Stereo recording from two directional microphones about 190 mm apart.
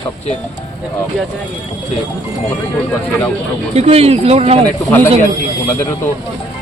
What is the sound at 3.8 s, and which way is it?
Speech, 30° right (ahead or behind).